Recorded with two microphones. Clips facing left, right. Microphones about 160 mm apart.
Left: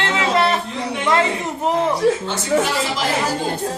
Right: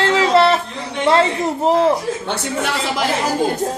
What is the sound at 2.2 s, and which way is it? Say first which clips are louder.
Speech: left 3 dB; 60° right (ahead or behind).